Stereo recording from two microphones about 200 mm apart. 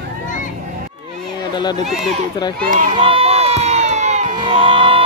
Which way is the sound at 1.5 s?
20° left (ahead or behind).